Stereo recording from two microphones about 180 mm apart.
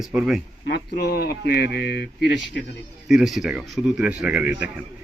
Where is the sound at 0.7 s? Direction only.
65° left (ahead or behind).